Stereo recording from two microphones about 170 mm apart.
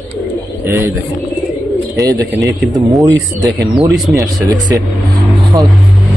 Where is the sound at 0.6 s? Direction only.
15° right (ahead or behind).